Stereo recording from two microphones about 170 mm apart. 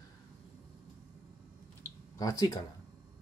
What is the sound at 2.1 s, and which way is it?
Speech, 20° left (ahead or behind).